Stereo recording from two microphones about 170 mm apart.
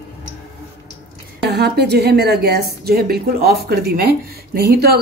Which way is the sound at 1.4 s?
75° right (ahead or behind).